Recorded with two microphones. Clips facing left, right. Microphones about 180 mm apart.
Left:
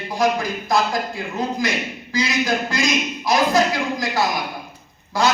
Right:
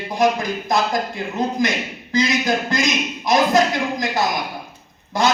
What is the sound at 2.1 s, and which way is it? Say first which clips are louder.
A man's voice: right 2 dB; 20° right (ahead or behind).